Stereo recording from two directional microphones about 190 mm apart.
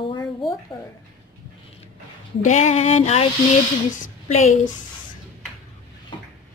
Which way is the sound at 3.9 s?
40° left (ahead or behind).